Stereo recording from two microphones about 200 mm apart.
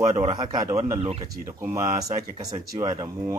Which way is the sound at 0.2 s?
20° right (ahead or behind).